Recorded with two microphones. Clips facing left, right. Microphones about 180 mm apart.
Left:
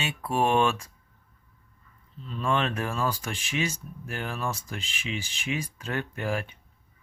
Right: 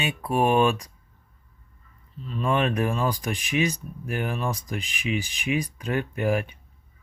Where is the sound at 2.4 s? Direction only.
15° right (ahead or behind).